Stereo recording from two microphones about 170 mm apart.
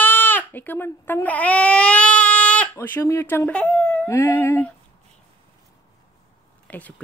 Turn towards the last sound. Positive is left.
turn(degrees=10)  # may be behind; listen again after turning